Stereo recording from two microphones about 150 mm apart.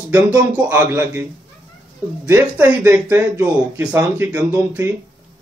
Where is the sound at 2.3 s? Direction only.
10° right (ahead or behind).